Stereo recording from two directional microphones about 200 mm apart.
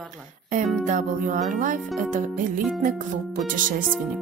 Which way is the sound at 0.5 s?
40° right (ahead or behind).